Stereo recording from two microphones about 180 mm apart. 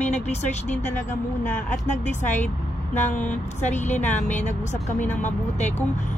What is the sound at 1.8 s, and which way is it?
Speech, 40° left (ahead or behind).